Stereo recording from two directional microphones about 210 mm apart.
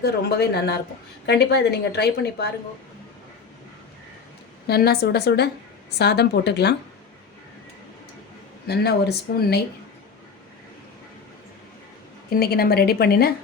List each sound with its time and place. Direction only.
0.0 s a woman's voice: 50° left (ahead or behind)
4.6 s a woman's voice: 50° left (ahead or behind)
8.6 s a woman's voice: 50° left (ahead or behind)
12.3 s a woman's voice: 45° left (ahead or behind)